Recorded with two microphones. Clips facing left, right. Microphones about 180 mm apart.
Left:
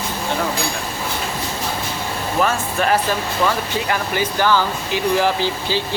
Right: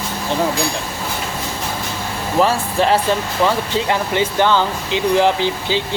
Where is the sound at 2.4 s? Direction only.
25° right (ahead or behind).